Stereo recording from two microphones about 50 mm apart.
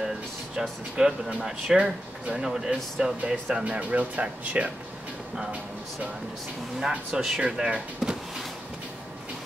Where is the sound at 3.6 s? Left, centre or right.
Right.